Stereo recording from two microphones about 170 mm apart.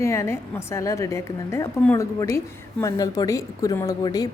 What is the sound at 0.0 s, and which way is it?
A woman's voice, 15° left (ahead or behind).